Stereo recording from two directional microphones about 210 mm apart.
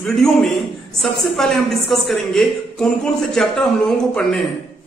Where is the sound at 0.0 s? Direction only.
Centre (ahead or behind).